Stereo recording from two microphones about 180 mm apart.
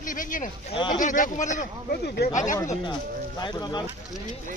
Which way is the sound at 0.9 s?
45° left (ahead or behind).